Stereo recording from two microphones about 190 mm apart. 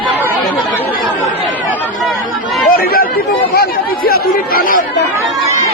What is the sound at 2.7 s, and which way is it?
Chatter, 55° left (ahead or behind).